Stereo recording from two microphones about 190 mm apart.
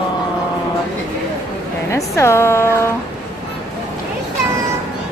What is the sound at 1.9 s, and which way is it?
A woman's voice, 15° left (ahead or behind).